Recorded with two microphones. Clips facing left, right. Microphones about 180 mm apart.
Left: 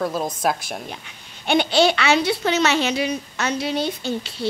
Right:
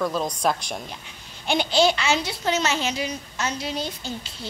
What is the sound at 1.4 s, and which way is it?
Speech, 60° left (ahead or behind).